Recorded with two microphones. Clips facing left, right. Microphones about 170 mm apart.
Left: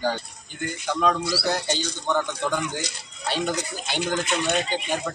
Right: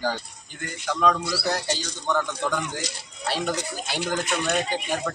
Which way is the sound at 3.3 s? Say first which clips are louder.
Left 1 dB; 5° right (ahead or behind).